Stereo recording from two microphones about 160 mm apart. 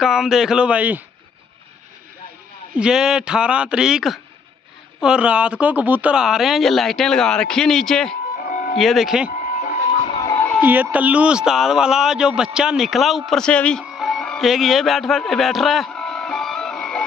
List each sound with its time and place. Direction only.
0.0 s speech: 5° right (ahead or behind)
2.7 s speech: 5° right (ahead or behind)
8.5 s music: 60° left (ahead or behind)
8.7 s speech: centre (ahead or behind)
10.2 s music: 10° left (ahead or behind)
10.6 s speech: 10° right (ahead or behind); by 13.8 s 5° left (ahead or behind)
13.8 s music: centre (ahead or behind)